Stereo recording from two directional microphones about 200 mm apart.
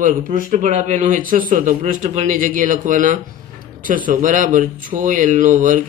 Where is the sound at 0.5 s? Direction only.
40° right (ahead or behind).